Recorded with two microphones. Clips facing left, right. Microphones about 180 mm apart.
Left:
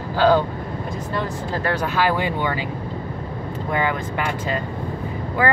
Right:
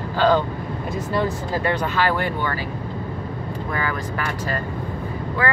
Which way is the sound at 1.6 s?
10° left (ahead or behind).